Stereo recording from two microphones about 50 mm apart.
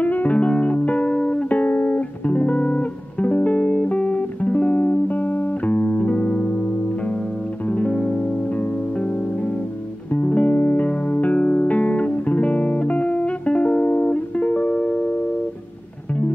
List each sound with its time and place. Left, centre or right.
0.0 s music: left